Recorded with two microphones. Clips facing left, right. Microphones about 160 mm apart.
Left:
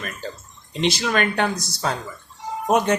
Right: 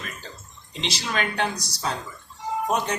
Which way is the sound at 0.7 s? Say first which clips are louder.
Left 8 dB; 55° left (ahead or behind).